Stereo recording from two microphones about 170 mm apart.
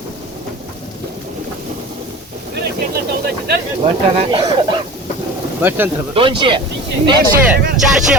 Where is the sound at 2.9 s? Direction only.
65° right (ahead or behind).